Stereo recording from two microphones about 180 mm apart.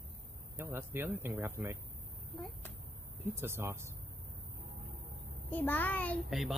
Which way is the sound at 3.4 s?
15° right (ahead or behind).